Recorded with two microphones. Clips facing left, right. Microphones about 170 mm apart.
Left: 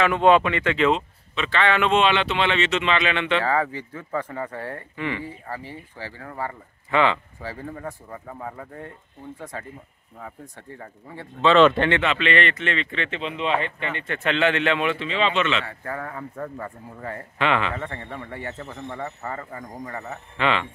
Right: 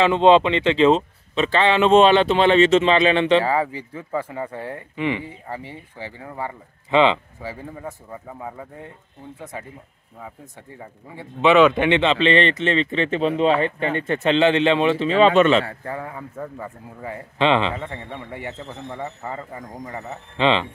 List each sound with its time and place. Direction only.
0.0 s speech: 25° right (ahead or behind)
3.4 s speech: 10° right (ahead or behind)
7.8 s a man's voice: 10° right (ahead or behind); by 14.2 s 40° right (ahead or behind)
14.2 s a man's voice: 30° right (ahead or behind)
15.0 s speech: 45° right (ahead or behind)
15.8 s speech: 20° right (ahead or behind)
17.4 s a man's voice: 25° right (ahead or behind)